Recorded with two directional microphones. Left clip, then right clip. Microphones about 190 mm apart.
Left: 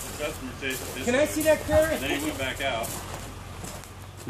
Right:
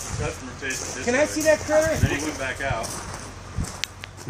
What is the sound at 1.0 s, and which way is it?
Speech, 25° right (ahead or behind).